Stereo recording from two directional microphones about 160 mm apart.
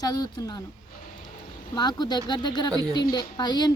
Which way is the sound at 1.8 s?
25° left (ahead or behind).